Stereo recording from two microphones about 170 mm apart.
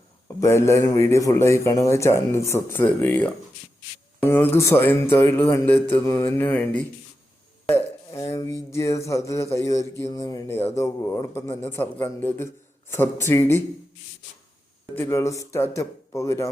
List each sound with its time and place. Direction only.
0.3 s speech: 15° left (ahead or behind)
8.1 s speech: 20° left (ahead or behind)
14.9 s speech: 15° left (ahead or behind)